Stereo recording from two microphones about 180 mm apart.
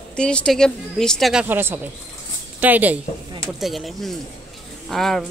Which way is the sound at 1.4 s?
10° right (ahead or behind).